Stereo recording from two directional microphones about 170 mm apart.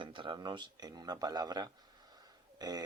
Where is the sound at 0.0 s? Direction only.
30° right (ahead or behind).